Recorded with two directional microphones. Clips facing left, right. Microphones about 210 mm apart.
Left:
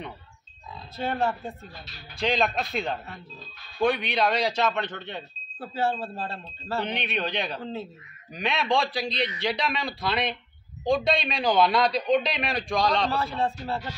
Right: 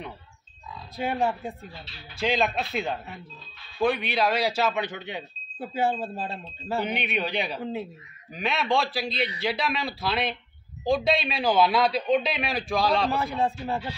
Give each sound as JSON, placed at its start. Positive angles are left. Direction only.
{"t": 0.9, "sound": "a man's voice", "side_deg": -10}
{"t": 8.3, "sound": "a man's voice", "side_deg": 0}
{"t": 13.2, "sound": "speech", "side_deg": -15}